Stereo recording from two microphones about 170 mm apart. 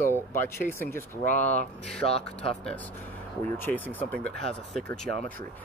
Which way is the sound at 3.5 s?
10° left (ahead or behind).